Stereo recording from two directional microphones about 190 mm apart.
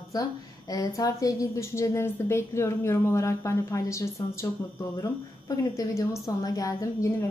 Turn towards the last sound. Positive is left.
turn(degrees=15)  # may be behind; listen again after turning